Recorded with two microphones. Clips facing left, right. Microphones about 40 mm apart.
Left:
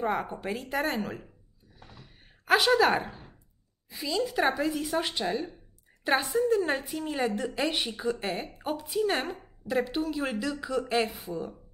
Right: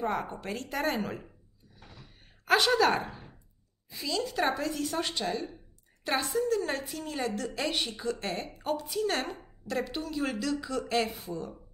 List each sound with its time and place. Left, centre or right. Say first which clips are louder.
0.0 s a woman's voice: left 2 dB; centre
1.8 s a sound: left 1 dB; centre
3.9 s a woman's voice: left 3 dB; centre